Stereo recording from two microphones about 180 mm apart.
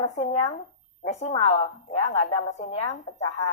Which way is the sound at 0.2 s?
35° left (ahead or behind).